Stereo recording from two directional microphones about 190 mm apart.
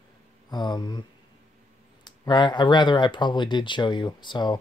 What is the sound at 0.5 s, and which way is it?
Speech, 25° left (ahead or behind).